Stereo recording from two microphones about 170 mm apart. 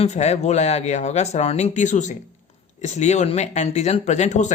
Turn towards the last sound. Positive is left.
turn(degrees=45)  # may be behind; listen again after turning